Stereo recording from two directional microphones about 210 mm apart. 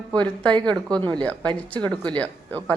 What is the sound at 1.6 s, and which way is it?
Speech, 5° left (ahead or behind).